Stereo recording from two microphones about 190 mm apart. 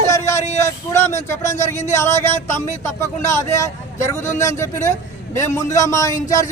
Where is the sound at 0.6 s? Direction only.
15° left (ahead or behind).